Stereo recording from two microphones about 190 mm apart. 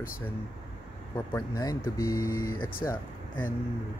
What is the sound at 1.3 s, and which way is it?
Speech, 15° left (ahead or behind).